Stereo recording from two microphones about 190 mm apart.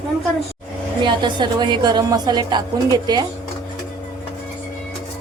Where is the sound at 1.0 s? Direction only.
25° right (ahead or behind).